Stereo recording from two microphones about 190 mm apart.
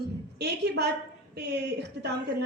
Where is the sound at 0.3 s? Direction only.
60° right (ahead or behind).